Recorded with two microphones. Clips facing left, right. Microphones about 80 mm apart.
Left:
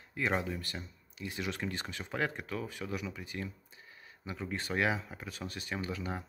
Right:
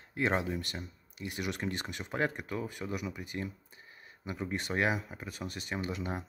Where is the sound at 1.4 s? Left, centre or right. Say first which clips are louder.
Right 2 dB; centre.